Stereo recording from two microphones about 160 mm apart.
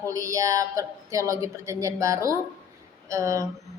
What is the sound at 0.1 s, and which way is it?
A woman's voice, 20° right (ahead or behind).